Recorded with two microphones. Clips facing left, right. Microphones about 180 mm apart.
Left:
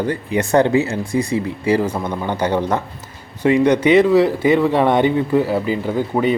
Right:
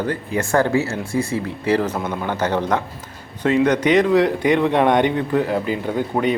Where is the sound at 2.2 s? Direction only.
15° left (ahead or behind).